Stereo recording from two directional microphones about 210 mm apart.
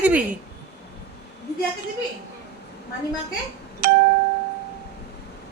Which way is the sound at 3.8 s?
50° right (ahead or behind).